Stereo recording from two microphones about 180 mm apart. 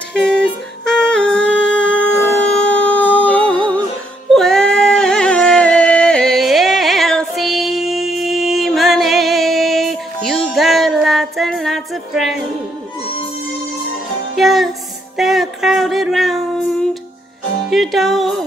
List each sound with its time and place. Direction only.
0.1 s music: 5° left (ahead or behind)
14.3 s music: centre (ahead or behind)
15.1 s a sound: centre (ahead or behind)
17.6 s music: centre (ahead or behind)